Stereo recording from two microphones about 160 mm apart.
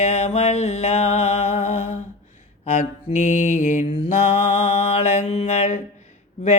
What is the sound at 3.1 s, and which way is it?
Mantra, 55° left (ahead or behind).